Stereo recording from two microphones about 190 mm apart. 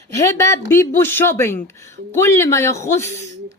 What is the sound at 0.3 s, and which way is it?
Speech, 15° left (ahead or behind).